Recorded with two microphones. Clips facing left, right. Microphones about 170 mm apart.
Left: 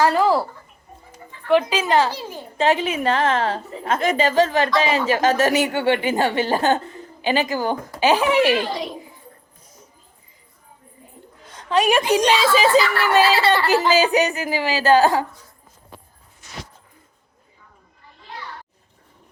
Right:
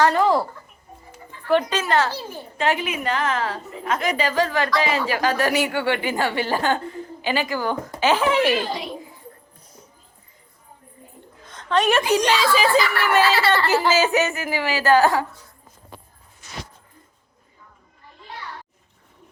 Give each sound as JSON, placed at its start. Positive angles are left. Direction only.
{"t": 0.0, "sound": "speech", "side_deg": 5}
{"t": 1.7, "sound": "a woman's voice", "side_deg": 15}
{"t": 2.6, "sound": "a woman's voice", "side_deg": 25}
{"t": 11.4, "sound": "a woman's voice", "side_deg": 10}